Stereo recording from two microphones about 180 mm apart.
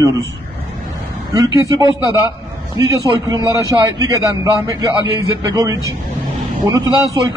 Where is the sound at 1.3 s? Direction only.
20° right (ahead or behind).